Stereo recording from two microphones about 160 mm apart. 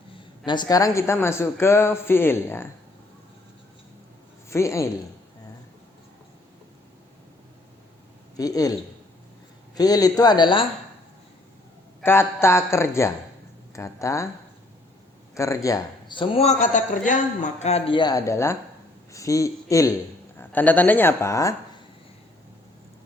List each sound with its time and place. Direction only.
0.4 s a woman's voice: 30° left (ahead or behind)
4.4 s a woman's voice: 20° left (ahead or behind)
8.4 s speech: 20° left (ahead or behind)
9.7 s speech: 25° left (ahead or behind)
12.0 s a woman's voice: 15° left (ahead or behind)
15.4 s speech: 20° left (ahead or behind); by 16.6 s 40° left (ahead or behind)
16.6 s a man's voice: 55° left (ahead or behind); by 21.5 s 20° left (ahead or behind)